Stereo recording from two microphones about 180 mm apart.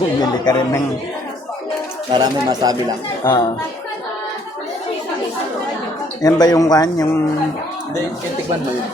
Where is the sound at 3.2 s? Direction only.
25° left (ahead or behind).